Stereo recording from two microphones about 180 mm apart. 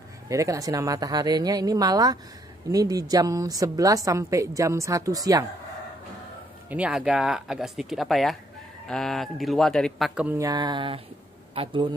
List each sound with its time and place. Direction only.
0.3 s a woman's voice: 15° right (ahead or behind)
6.7 s a man's voice: 5° right (ahead or behind); by 11.9 s 30° right (ahead or behind)